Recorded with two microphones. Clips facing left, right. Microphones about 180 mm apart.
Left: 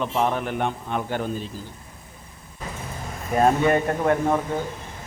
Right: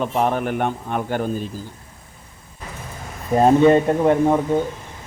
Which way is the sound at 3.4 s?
20° right (ahead or behind).